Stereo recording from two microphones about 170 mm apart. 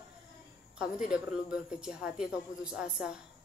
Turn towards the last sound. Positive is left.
turn(degrees=-5)  # may be behind; listen again after turning